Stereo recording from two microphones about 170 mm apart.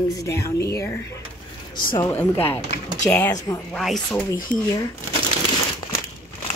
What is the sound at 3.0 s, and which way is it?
Speech, 15° left (ahead or behind).